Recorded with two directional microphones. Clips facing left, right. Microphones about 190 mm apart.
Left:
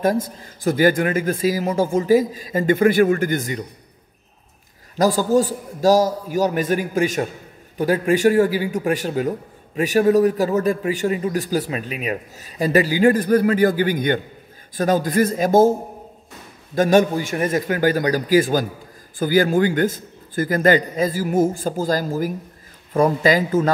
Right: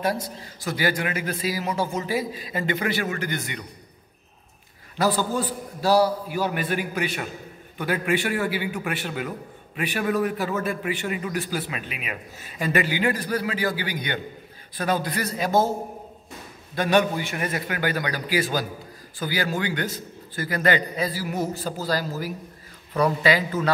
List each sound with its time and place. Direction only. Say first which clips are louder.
0.0 s a man's voice: left 6 dB; 50° left (ahead or behind)
4.9 s a man's voice: left 7 dB; 40° left (ahead or behind)
16.7 s a man's voice: left 6 dB; 45° left (ahead or behind)